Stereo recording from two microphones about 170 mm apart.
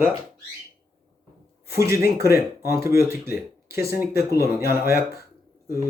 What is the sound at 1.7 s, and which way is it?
Speech, 15° right (ahead or behind).